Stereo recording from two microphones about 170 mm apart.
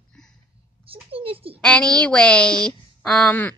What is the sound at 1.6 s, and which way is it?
A woman's voice, 5° left (ahead or behind).